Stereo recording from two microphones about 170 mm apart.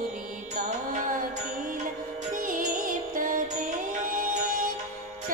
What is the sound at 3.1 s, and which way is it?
Music, 55° right (ahead or behind).